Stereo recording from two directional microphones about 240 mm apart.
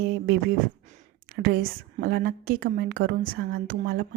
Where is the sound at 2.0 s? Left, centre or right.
Right.